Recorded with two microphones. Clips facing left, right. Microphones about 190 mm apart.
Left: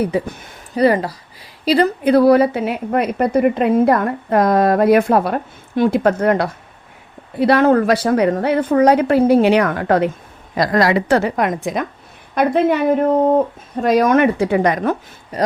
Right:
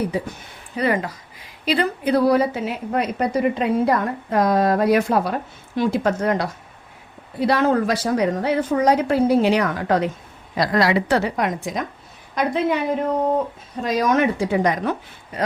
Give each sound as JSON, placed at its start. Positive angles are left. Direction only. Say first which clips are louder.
{"t": 0.8, "sound": "speech", "louder": "left 7 dB", "side_deg": 35}
{"t": 2.0, "sound": "a woman's voice", "louder": "left 5 dB", "side_deg": 60}